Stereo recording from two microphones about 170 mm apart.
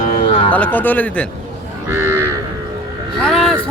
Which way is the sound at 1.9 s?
15° right (ahead or behind).